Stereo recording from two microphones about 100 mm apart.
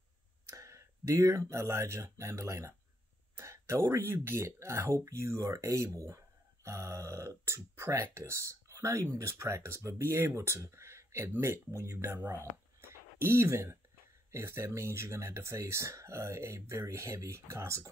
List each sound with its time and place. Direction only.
0.5 s speech: 30° right (ahead or behind)